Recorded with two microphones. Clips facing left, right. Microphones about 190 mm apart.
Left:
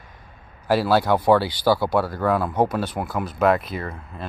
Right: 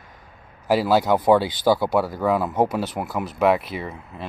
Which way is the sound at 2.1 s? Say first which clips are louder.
Even; 5° right (ahead or behind).